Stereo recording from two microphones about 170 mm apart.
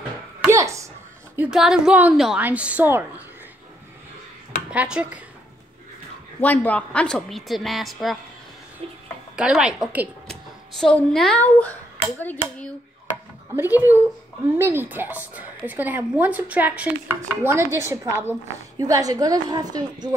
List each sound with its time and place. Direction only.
0.5 s a sound: 20° right (ahead or behind)
1.3 s speech: 5° right (ahead or behind)
4.6 s a woman's voice: 5° right (ahead or behind)
6.4 s a woman's voice: 10° left (ahead or behind)
9.4 s a woman's voice: 5° right (ahead or behind); by 12.6 s 10° left (ahead or behind)
13.6 s a woman's voice: 10° right (ahead or behind)